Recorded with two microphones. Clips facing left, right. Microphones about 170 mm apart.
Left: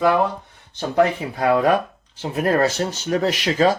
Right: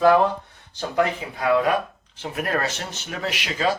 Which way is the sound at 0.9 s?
35° left (ahead or behind).